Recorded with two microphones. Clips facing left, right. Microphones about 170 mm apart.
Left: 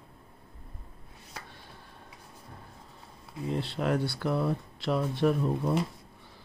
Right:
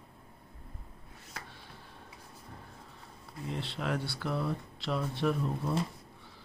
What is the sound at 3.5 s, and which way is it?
Speech, 40° left (ahead or behind).